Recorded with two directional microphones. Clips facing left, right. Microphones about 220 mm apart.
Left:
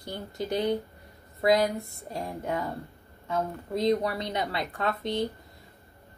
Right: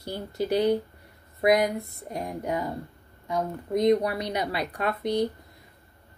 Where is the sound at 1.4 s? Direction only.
15° right (ahead or behind).